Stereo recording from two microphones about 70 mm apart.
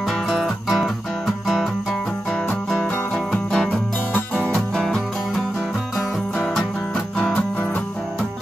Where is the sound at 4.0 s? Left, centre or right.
Left.